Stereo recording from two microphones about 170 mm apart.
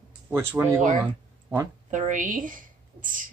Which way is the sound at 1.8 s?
45° right (ahead or behind).